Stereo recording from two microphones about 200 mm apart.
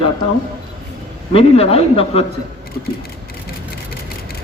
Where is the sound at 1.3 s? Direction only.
30° left (ahead or behind).